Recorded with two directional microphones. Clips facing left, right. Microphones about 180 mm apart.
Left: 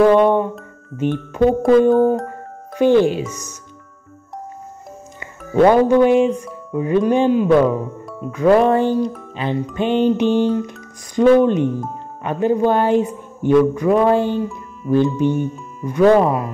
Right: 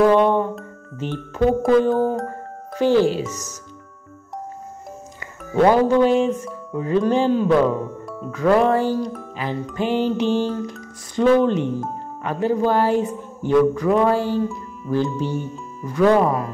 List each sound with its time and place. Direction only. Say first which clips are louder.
0.0 s music: left 3 dB; 15° left (ahead or behind)
0.9 s speech: left 7 dB; 15° left (ahead or behind)
2.7 s speech: left 3 dB; 20° left (ahead or behind)
5.7 s speech: left 3 dB; 15° left (ahead or behind)